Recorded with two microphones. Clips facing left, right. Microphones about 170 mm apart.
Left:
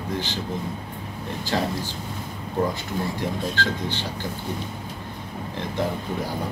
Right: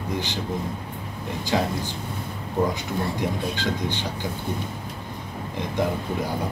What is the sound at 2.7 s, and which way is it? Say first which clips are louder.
Speech: right 1 dB; 15° right (ahead or behind).